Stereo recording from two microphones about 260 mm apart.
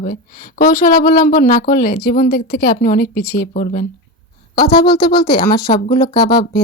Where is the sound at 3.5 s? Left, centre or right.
Left.